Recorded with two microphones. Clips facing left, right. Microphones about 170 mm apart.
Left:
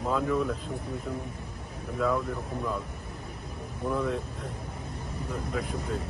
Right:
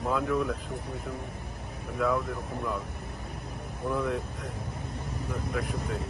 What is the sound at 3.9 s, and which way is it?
Speech, centre (ahead or behind).